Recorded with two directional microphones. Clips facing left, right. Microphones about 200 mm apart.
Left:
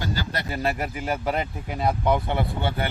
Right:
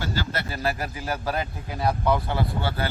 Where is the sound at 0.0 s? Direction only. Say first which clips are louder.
Even; 15° left (ahead or behind).